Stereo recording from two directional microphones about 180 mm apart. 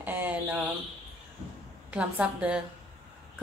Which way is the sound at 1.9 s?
5° right (ahead or behind).